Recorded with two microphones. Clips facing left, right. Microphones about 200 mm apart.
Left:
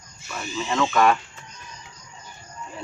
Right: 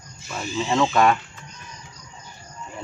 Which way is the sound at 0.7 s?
30° right (ahead or behind).